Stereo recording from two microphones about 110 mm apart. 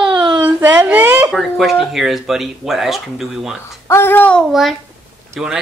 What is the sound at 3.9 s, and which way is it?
Child singing, 20° left (ahead or behind).